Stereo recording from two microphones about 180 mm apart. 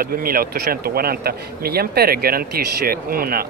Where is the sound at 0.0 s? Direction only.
55° right (ahead or behind).